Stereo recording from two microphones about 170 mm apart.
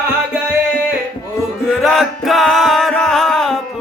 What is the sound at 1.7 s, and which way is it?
Music, centre (ahead or behind).